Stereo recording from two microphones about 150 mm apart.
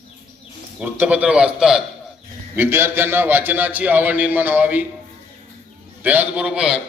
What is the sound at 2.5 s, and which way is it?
A man's voice, 15° right (ahead or behind).